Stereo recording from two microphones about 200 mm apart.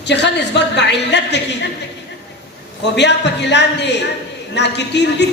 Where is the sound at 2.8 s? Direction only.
60° left (ahead or behind).